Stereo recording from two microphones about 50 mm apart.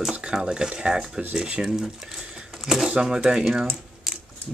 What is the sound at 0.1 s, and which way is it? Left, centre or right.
Speech, centre.